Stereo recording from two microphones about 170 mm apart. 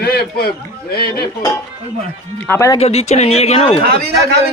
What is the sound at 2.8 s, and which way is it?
Speech, 40° left (ahead or behind).